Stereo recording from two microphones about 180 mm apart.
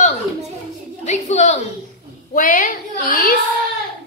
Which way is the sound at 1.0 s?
40° left (ahead or behind).